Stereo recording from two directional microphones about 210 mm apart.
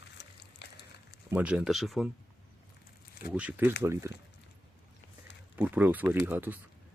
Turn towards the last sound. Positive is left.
turn(degrees=-10)  # may be behind; listen again after turning